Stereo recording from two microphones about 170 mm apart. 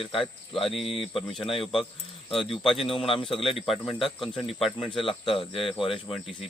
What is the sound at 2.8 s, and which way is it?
Speech, 30° left (ahead or behind).